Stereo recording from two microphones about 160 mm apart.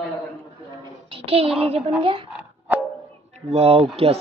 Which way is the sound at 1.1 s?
35° right (ahead or behind).